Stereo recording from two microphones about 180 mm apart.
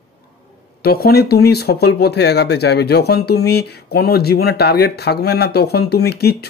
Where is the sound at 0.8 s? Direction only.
60° left (ahead or behind).